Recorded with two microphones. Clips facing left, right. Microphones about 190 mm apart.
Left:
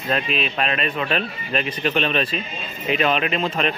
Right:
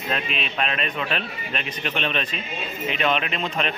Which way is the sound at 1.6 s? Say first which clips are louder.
Left 6 dB; 40° left (ahead or behind).